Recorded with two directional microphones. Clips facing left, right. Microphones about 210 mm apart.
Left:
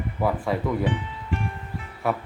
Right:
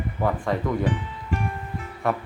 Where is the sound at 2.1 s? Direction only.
5° left (ahead or behind).